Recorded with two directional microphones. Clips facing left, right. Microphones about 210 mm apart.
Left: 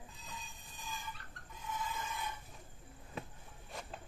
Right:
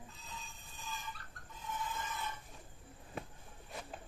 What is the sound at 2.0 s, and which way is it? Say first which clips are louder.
Chicken: even; 15° left (ahead or behind).